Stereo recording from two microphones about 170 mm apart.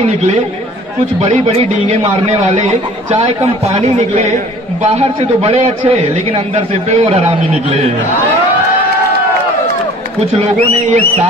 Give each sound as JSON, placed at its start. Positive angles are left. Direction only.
{"t": 0.0, "sound": "a man's voice", "side_deg": -40}
{"t": 2.2, "sound": "a man's voice", "side_deg": -35}
{"t": 10.3, "sound": "speech", "side_deg": -45}